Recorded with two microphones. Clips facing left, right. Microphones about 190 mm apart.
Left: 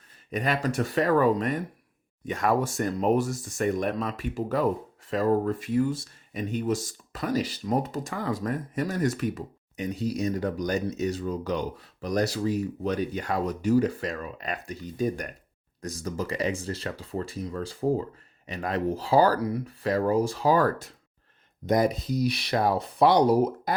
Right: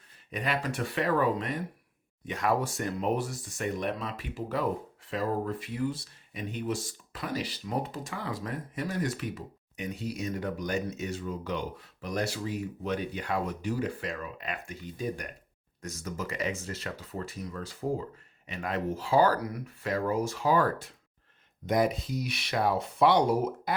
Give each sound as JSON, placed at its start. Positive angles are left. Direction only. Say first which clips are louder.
{"t": 0.3, "sound": "speech", "louder": "left 5 dB", "side_deg": 45}